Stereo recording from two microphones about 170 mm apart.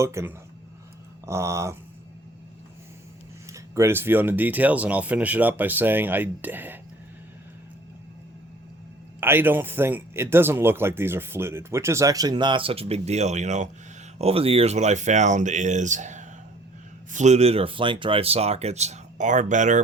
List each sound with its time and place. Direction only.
0.0 s speech: 15° right (ahead or behind)
3.5 s speech: 15° right (ahead or behind)
9.2 s speech: 10° right (ahead or behind); by 19.8 s 45° right (ahead or behind)